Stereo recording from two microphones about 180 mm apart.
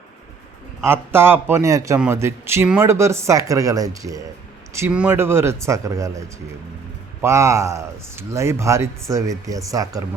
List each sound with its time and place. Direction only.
0.9 s speech: 15° right (ahead or behind)